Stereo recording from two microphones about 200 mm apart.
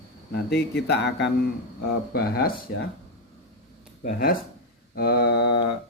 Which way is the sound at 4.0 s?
45° left (ahead or behind).